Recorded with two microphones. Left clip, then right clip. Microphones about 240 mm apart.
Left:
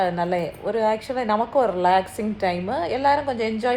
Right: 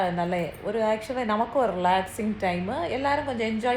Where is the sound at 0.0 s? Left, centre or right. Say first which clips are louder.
Left 4 dB; centre.